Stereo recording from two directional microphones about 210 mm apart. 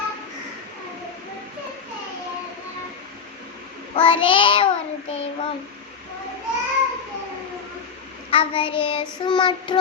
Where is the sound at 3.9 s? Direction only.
25° left (ahead or behind).